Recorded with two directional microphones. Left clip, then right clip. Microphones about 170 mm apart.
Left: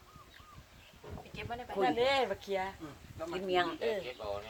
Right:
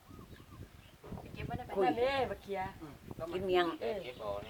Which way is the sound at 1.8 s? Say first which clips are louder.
Left 2 dB; 60° left (ahead or behind).